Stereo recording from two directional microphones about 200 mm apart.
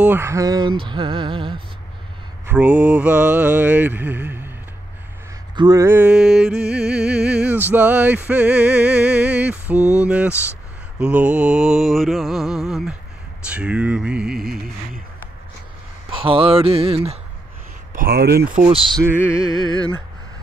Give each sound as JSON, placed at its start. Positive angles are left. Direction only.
{"t": 0.0, "sound": "speech", "side_deg": -10}
{"t": 2.4, "sound": "music", "side_deg": -5}
{"t": 5.6, "sound": "music", "side_deg": -15}
{"t": 9.9, "sound": "mantra", "side_deg": -5}
{"t": 16.1, "sound": "speech", "side_deg": -25}
{"t": 17.9, "sound": "speech", "side_deg": -50}
{"t": 19.0, "sound": "mantra", "side_deg": -5}
{"t": 19.5, "sound": "music", "side_deg": 20}